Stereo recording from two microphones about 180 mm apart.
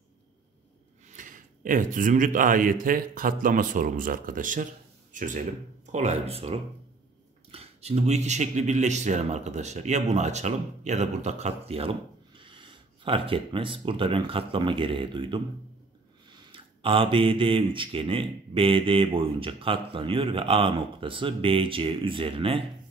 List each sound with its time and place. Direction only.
1.1 s speech: 45° right (ahead or behind); by 15.4 s 30° right (ahead or behind)
16.5 s speech: 30° right (ahead or behind)